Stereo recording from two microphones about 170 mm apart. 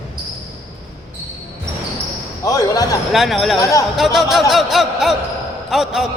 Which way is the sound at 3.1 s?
Centre (ahead or behind).